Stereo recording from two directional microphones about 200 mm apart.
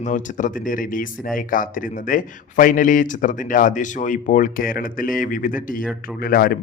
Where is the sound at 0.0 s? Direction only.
40° left (ahead or behind).